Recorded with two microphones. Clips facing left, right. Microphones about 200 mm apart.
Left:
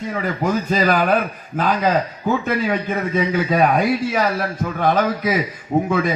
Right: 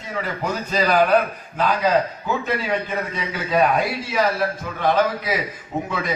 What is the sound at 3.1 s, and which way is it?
A man's voice, 50° left (ahead or behind).